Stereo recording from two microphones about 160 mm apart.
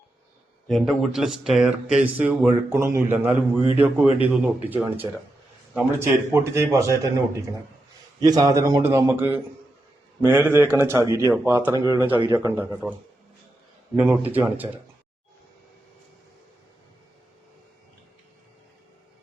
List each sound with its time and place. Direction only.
0.7 s a man's voice: centre (ahead or behind); by 6.9 s 20° right (ahead or behind)
8.2 s a man's voice: 25° right (ahead or behind)